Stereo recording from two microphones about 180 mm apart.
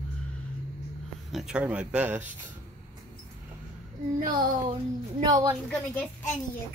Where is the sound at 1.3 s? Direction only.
5° right (ahead or behind).